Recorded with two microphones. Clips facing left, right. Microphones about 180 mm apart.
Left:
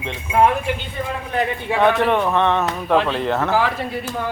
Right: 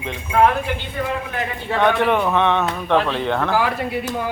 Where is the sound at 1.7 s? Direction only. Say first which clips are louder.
Even; centre (ahead or behind).